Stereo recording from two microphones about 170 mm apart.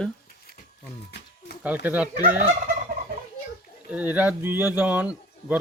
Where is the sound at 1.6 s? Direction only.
10° right (ahead or behind).